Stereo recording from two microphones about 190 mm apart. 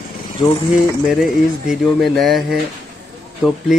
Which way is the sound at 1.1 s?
Centre (ahead or behind).